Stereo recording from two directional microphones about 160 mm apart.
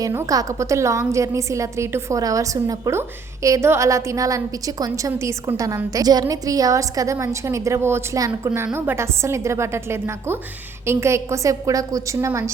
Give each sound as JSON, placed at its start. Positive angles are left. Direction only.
{"t": 0.0, "sound": "a woman's voice", "side_deg": -20}